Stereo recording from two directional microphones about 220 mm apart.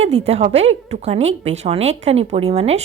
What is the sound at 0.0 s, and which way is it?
A woman's voice, 30° right (ahead or behind).